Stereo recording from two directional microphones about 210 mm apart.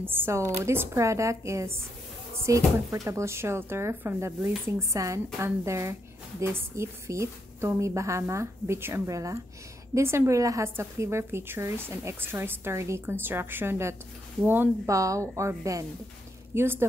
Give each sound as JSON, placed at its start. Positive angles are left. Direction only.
{"t": 0.0, "sound": "a woman's voice", "side_deg": -10}